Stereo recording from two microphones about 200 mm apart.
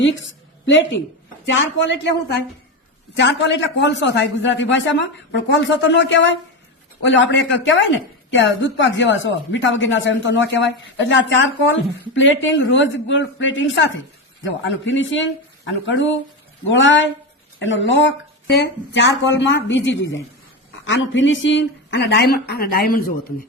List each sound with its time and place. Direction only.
0.0 s a woman's voice: 70° left (ahead or behind)
3.2 s a man's voice: 60° left (ahead or behind)